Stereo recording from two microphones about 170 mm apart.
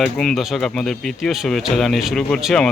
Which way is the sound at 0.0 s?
Centre (ahead or behind).